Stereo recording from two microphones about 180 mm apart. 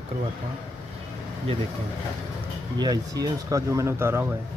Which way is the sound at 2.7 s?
20° right (ahead or behind).